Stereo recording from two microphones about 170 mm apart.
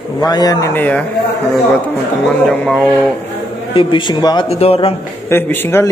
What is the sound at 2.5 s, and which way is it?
Speech, centre (ahead or behind).